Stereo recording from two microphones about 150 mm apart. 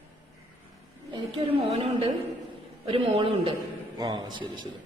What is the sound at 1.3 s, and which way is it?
Speech, 35° right (ahead or behind).